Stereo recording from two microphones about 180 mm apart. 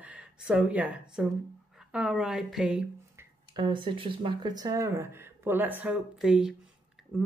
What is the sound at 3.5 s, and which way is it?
Speech, 25° right (ahead or behind).